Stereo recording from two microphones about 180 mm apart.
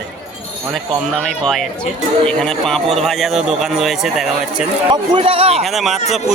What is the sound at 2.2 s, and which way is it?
Speech, 5° left (ahead or behind).